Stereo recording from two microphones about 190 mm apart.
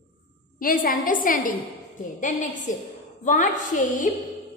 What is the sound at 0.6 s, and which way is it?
A woman's voice, 45° left (ahead or behind).